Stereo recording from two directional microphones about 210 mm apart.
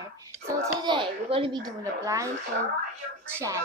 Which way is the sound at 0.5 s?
15° right (ahead or behind).